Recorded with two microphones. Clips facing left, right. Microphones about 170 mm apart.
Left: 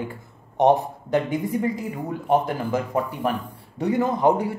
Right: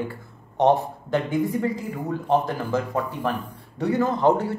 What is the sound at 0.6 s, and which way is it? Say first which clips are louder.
Speech: left 1 dB; 15° left (ahead or behind).